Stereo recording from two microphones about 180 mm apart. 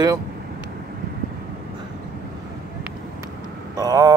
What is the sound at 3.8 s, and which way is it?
Speech, 20° right (ahead or behind).